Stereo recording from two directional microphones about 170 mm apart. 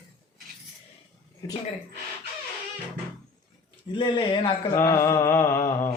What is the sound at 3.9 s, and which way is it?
Speech, 25° left (ahead or behind).